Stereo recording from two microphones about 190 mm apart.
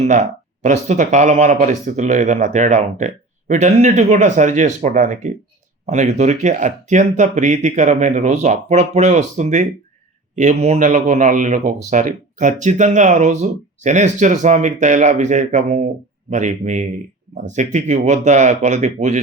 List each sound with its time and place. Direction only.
0.0 s speech: 40° right (ahead or behind)